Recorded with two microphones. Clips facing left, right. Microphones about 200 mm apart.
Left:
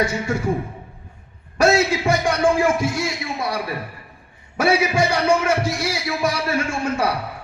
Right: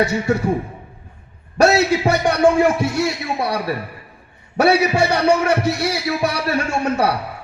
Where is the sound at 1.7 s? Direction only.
65° right (ahead or behind).